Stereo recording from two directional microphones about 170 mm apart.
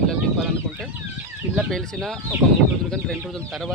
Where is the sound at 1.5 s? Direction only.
5° left (ahead or behind).